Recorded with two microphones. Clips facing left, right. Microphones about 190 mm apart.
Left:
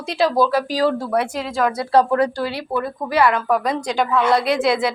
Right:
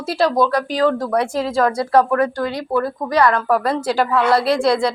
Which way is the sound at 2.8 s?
5° left (ahead or behind).